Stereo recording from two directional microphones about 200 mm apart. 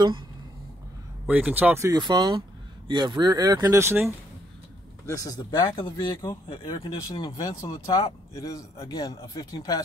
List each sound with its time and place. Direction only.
1.2 s speech: 10° right (ahead or behind)
5.0 s speech: 15° left (ahead or behind)